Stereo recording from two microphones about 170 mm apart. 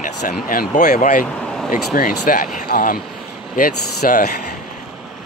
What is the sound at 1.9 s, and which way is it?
Speech, 60° left (ahead or behind).